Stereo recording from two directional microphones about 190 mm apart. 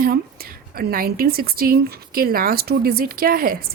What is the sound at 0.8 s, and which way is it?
Speech, 50° right (ahead or behind).